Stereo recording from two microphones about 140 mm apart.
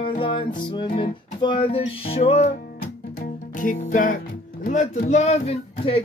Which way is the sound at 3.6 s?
70° left (ahead or behind).